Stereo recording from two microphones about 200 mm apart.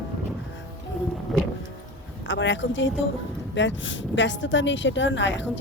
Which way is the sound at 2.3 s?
70° left (ahead or behind).